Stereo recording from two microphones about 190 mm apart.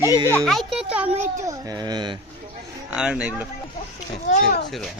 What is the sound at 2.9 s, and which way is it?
Speech, 5° right (ahead or behind).